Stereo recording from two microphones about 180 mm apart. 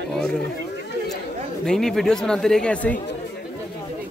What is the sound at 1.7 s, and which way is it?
Speech, centre (ahead or behind).